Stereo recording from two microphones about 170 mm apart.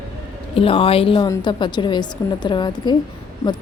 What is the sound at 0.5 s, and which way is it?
A woman's voice, 35° left (ahead or behind).